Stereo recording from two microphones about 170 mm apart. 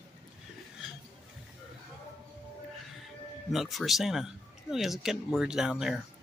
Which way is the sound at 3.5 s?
Centre (ahead or behind).